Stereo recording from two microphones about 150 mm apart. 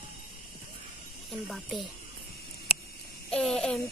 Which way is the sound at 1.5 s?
Centre (ahead or behind).